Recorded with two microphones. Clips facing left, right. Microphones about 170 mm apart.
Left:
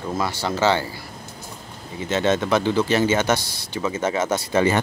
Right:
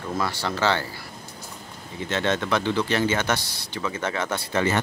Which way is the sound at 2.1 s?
10° left (ahead or behind).